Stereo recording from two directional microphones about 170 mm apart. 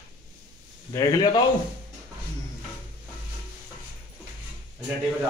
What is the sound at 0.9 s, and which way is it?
Speech, 20° left (ahead or behind).